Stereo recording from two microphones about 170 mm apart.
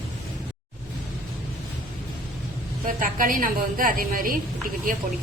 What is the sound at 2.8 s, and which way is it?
A woman's voice, 55° right (ahead or behind).